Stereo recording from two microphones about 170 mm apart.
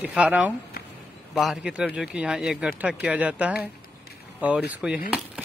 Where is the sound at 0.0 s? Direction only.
5° right (ahead or behind).